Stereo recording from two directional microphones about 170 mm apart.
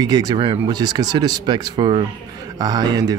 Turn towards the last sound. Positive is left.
turn(degrees=-20)  # may be behind; listen again after turning